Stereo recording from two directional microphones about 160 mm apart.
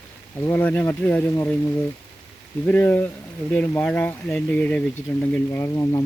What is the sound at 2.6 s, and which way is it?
Speech, 10° left (ahead or behind).